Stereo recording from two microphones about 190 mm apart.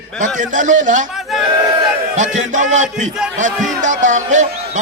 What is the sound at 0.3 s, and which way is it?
Speech, 40° right (ahead or behind).